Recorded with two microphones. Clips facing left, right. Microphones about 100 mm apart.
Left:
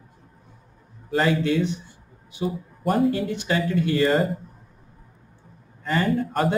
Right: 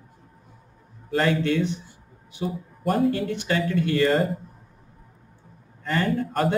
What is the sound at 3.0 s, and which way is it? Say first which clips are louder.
Speech: left 1 dB; 20° left (ahead or behind).